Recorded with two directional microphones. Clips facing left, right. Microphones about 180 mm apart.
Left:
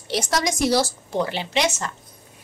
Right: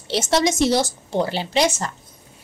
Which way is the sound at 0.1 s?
25° right (ahead or behind).